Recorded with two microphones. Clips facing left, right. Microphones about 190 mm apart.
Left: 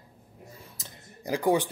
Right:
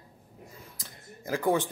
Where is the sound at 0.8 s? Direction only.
15° left (ahead or behind).